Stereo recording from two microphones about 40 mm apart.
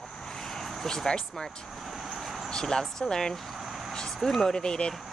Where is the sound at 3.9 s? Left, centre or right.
Centre.